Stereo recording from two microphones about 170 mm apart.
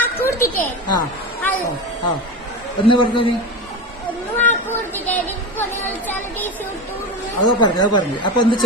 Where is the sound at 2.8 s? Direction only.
30° left (ahead or behind).